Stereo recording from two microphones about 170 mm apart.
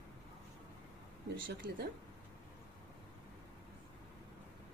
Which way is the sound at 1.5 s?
90° right.